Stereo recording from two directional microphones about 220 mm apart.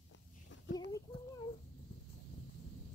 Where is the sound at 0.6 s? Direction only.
55° left (ahead or behind).